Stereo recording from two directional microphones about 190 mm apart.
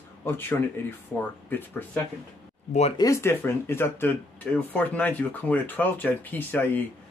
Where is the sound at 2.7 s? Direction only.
35° left (ahead or behind).